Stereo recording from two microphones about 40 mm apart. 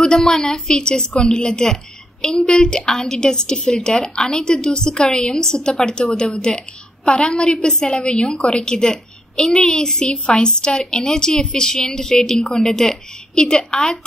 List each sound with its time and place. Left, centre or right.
0.2 s a woman's voice: centre